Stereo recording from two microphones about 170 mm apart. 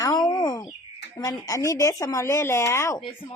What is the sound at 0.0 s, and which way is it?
Bird, 20° left (ahead or behind).